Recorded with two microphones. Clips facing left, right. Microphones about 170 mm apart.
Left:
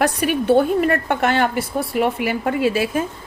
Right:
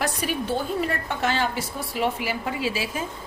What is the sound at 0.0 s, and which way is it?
A woman's voice, 65° left (ahead or behind).